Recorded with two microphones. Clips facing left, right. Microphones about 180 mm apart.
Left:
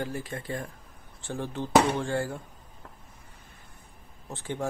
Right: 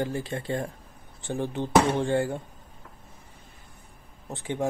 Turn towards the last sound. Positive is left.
turn(degrees=-20)  # may be behind; listen again after turning